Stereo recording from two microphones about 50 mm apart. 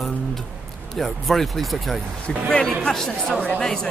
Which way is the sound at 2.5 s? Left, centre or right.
Centre.